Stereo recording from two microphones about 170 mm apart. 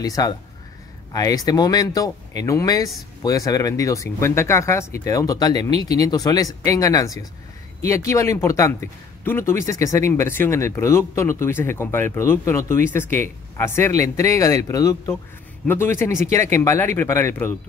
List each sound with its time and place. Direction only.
0.0 s speech: 20° left (ahead or behind)